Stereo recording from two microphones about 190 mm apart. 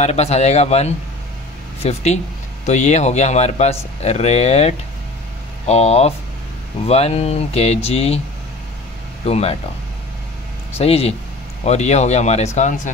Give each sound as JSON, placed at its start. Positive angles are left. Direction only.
{"t": 0.0, "sound": "speech", "side_deg": 35}
{"t": 9.2, "sound": "speech", "side_deg": 35}
{"t": 10.8, "sound": "speech", "side_deg": 35}